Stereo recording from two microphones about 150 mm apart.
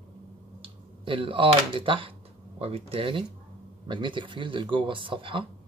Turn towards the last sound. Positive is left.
turn(degrees=-35)  # may be behind; listen again after turning